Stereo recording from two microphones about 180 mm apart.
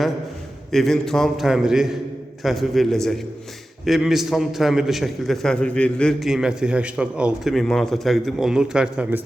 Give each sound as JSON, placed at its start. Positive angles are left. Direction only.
{"t": 0.7, "sound": "a man's voice", "side_deg": 0}